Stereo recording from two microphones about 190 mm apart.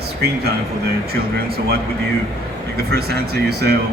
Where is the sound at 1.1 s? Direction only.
55° right (ahead or behind).